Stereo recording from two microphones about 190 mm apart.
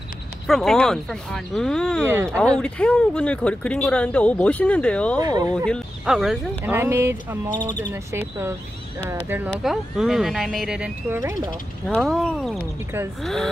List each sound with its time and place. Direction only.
0.5 s speech: centre (ahead or behind)
2.0 s speech: 10° right (ahead or behind)
2.3 s speech: 5° left (ahead or behind)
5.2 s speech: 20° right (ahead or behind)
5.7 s speech: centre (ahead or behind)
11.1 s speech: 15° right (ahead or behind)
11.9 s speech: centre (ahead or behind)